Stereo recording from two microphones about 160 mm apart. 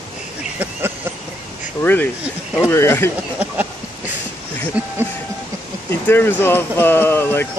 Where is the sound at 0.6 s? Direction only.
10° right (ahead or behind).